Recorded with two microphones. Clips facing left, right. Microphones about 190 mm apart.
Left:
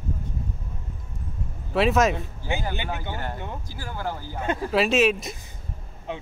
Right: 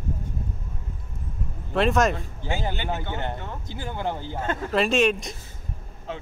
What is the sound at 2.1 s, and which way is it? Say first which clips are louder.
Speech: left 1 dB; 15° left (ahead or behind).